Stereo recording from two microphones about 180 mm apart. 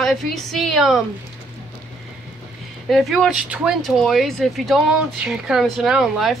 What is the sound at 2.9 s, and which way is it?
A woman's voice, centre (ahead or behind).